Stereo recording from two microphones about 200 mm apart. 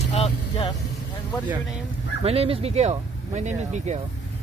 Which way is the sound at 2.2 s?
30° right (ahead or behind).